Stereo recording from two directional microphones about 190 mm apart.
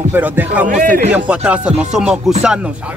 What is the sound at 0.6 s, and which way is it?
Speech, 45° right (ahead or behind).